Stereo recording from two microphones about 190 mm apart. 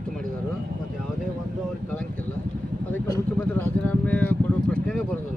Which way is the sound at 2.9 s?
10° left (ahead or behind).